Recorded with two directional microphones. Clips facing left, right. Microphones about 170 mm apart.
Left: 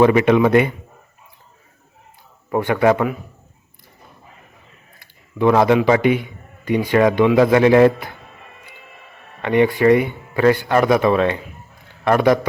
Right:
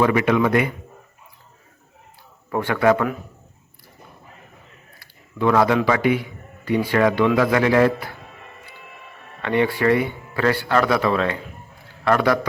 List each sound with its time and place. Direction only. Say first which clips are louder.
0.0 s a man's voice: left 5 dB; 25° left (ahead or behind)
2.5 s speech: left 2 dB; 15° left (ahead or behind)
4.9 s a man's voice: left 4 dB; 20° left (ahead or behind)
9.4 s a man's voice: left 5 dB; 15° left (ahead or behind)